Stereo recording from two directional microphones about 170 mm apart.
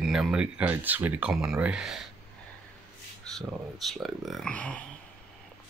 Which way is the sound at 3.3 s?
Centre (ahead or behind).